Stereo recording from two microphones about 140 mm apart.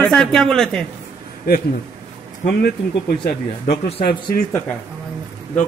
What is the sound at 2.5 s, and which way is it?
Speech, 90° left.